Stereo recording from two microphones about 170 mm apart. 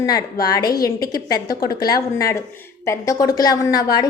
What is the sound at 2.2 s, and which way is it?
A woman's voice, 15° left (ahead or behind).